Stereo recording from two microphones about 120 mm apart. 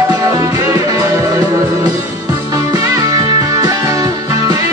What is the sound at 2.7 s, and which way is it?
Music, 30° right (ahead or behind).